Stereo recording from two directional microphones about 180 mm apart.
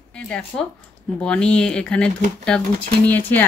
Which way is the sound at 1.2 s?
5° left (ahead or behind).